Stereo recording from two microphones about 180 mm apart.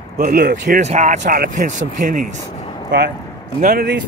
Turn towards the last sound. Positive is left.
turn(degrees=-50)  # may be behind; listen again after turning